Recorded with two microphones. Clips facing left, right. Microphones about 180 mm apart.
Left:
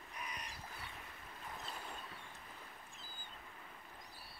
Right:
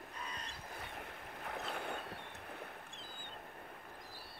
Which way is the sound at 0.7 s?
65° right (ahead or behind).